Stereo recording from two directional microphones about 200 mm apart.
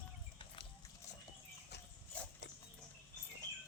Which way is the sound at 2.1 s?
5° left (ahead or behind).